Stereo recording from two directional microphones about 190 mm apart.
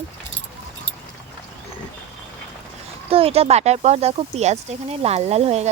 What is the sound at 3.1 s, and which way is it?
Speech, 30° right (ahead or behind).